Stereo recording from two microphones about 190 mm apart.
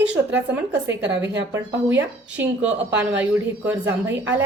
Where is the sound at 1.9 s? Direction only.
10° right (ahead or behind).